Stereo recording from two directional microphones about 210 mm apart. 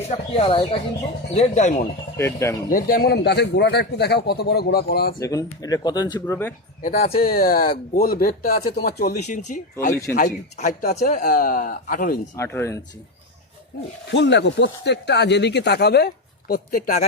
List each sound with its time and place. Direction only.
0.1 s a man's voice: 25° left (ahead or behind)
2.1 s speech: 10° left (ahead or behind)
2.6 s speech: 40° left (ahead or behind)
5.2 s speech: 15° left (ahead or behind)
6.8 s a man's voice: 35° left (ahead or behind)
12.4 s speech: 10° left (ahead or behind)
13.7 s speech: 50° left (ahead or behind)